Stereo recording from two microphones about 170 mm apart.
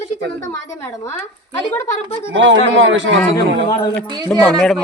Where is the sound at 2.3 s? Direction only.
90° right.